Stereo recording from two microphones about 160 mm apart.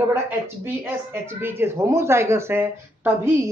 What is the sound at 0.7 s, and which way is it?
A woman's voice, 15° right (ahead or behind).